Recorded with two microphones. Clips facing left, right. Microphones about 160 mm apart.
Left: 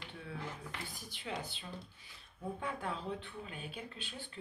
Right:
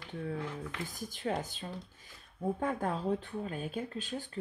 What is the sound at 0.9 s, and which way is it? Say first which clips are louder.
Speech: right 9 dB; 45° right (ahead or behind).